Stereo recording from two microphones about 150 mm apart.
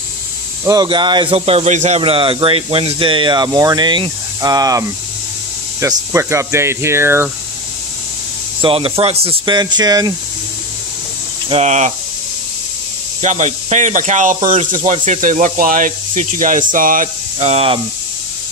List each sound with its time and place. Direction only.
0.7 s a man's voice: 30° right (ahead or behind)
8.5 s a man's voice: 35° right (ahead or behind)
9.6 s speech: 30° right (ahead or behind)
11.4 s speech: 45° right (ahead or behind)
13.2 s speech: 50° right (ahead or behind)
17.5 s a man's voice: 40° right (ahead or behind)